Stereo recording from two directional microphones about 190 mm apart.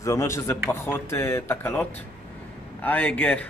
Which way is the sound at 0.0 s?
15° left (ahead or behind).